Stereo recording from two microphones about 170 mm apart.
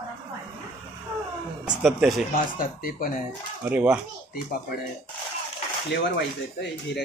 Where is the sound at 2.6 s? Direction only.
55° left (ahead or behind).